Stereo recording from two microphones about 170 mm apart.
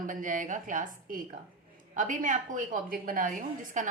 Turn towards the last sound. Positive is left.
turn(degrees=-50)  # may be behind; listen again after turning